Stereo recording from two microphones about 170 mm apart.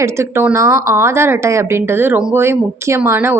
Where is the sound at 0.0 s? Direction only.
15° right (ahead or behind).